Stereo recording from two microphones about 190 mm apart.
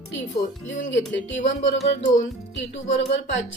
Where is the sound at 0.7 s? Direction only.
80° left.